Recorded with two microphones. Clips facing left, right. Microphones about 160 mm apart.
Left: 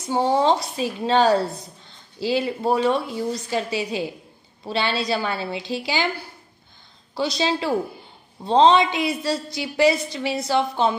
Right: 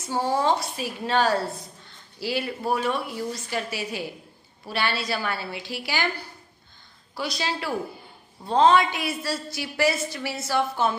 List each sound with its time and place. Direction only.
0.0 s a woman's voice: 20° left (ahead or behind)
7.2 s a woman's voice: 25° left (ahead or behind)